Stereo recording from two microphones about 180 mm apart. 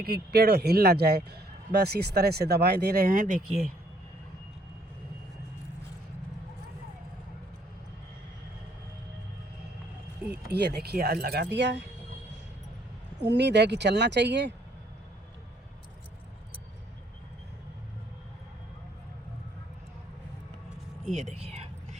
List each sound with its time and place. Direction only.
0.0 s a man's voice: 60° right (ahead or behind); by 3.4 s 45° right (ahead or behind)
10.5 s a man's voice: 65° right (ahead or behind)
13.2 s speech: 75° right (ahead or behind)
21.0 s a sound: 40° right (ahead or behind)